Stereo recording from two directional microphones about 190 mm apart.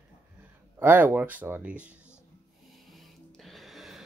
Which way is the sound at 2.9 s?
Centre (ahead or behind).